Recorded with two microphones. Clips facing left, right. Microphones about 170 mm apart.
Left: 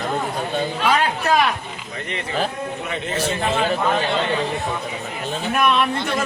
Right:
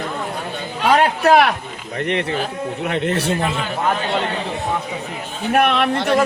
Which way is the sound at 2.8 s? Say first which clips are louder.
Right 5 dB; 65° right (ahead or behind).